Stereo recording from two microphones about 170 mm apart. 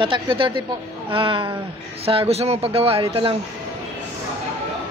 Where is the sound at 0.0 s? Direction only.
30° right (ahead or behind).